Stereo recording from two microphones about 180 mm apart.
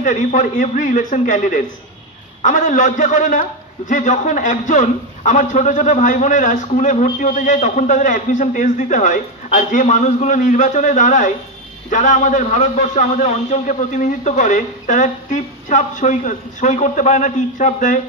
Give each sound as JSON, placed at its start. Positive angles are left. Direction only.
{"t": 0.0, "sound": "a man's voice", "side_deg": 45}